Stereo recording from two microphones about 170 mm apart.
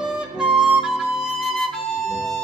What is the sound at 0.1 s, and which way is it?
Flute, 5° right (ahead or behind).